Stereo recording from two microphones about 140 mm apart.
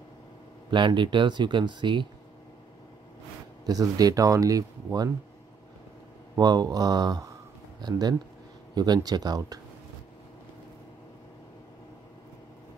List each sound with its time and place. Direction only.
0.7 s speech: 35° right (ahead or behind)
3.6 s speech: 25° right (ahead or behind)
6.3 s speech: 30° right (ahead or behind)